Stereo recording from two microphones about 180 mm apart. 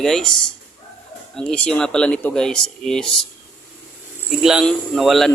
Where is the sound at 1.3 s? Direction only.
5° left (ahead or behind).